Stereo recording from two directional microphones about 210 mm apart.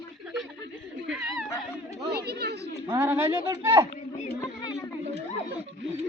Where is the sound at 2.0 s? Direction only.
50° right (ahead or behind).